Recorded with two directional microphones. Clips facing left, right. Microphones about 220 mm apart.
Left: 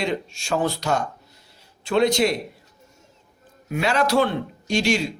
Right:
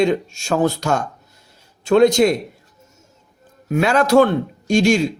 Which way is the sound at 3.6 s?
45° right (ahead or behind).